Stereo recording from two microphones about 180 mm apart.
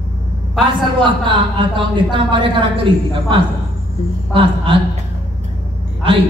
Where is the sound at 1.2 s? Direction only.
25° right (ahead or behind).